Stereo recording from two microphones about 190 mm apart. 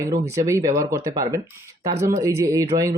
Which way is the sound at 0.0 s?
15° right (ahead or behind).